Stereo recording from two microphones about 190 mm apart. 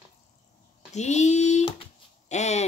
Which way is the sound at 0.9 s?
35° left (ahead or behind).